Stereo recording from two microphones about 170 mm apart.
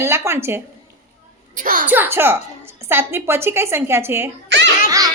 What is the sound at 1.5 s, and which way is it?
Speech, 50° right (ahead or behind).